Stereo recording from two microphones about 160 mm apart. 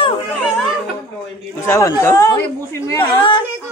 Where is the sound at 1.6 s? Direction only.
20° left (ahead or behind).